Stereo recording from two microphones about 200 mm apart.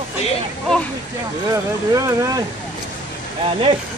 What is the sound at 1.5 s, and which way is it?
Speech, 15° right (ahead or behind).